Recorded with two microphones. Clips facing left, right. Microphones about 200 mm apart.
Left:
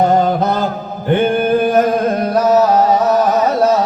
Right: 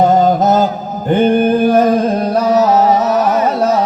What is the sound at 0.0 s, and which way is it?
Chant, 55° left (ahead or behind).